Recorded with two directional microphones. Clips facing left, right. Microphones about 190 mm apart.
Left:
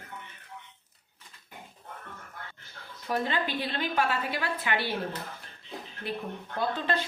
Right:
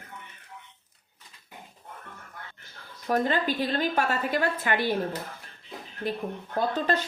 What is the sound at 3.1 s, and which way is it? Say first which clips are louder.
A woman's voice: right 4 dB; 45° right (ahead or behind).